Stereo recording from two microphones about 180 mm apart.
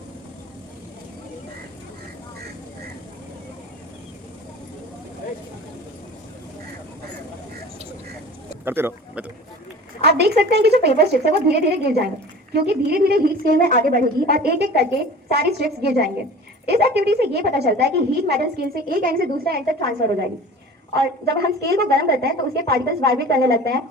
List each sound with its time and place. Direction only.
8.6 s speech: 10° right (ahead or behind)
10.0 s a woman's voice: 65° right (ahead or behind)
21.2 s a woman's voice: 65° right (ahead or behind)